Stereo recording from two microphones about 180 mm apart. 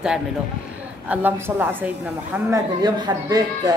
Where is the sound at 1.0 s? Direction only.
10° right (ahead or behind).